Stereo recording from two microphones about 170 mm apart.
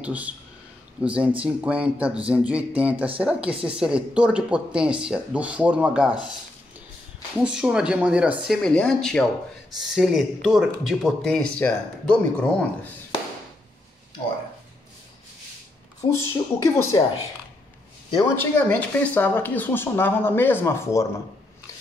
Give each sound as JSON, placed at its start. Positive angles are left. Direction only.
{"t": 0.0, "sound": "speech", "side_deg": -10}
{"t": 7.4, "sound": "speech", "side_deg": -5}
{"t": 16.1, "sound": "speech", "side_deg": 15}
{"t": 18.1, "sound": "speech", "side_deg": 15}